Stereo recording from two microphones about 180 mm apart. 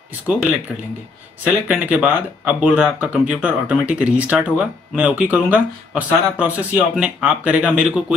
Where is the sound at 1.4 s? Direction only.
10° right (ahead or behind).